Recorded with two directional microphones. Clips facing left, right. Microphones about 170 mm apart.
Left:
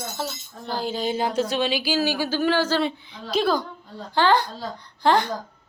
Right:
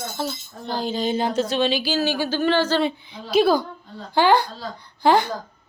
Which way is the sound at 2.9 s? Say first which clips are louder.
Right 3 dB; 10° right (ahead or behind).